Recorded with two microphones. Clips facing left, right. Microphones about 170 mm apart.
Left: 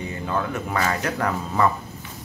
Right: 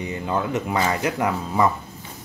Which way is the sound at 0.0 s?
20° right (ahead or behind).